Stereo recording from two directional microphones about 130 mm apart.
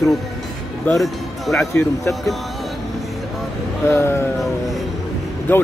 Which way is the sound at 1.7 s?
25° left (ahead or behind).